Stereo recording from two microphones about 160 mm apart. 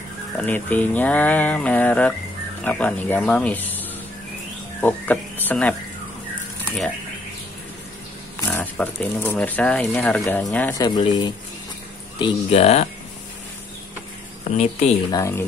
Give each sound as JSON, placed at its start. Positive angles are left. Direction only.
{"t": 0.4, "sound": "speech", "side_deg": 10}
{"t": 4.8, "sound": "frog", "side_deg": 10}
{"t": 8.4, "sound": "speech", "side_deg": 10}
{"t": 10.8, "sound": "speech", "side_deg": 25}
{"t": 15.0, "sound": "speech", "side_deg": 20}